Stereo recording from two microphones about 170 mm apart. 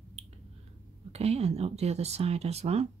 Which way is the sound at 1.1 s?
40° right (ahead or behind).